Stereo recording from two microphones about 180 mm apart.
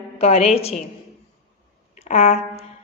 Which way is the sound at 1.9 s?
35° left (ahead or behind).